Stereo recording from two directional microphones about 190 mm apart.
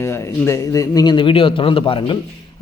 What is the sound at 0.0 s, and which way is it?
A man's voice, 15° left (ahead or behind).